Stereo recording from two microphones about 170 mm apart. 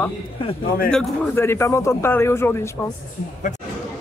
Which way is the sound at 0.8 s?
5° left (ahead or behind).